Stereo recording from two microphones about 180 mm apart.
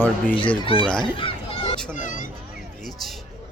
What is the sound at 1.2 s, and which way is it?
Fowl, 30° left (ahead or behind).